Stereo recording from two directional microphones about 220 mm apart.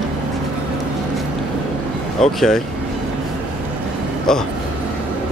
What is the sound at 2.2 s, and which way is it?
Speech, centre (ahead or behind).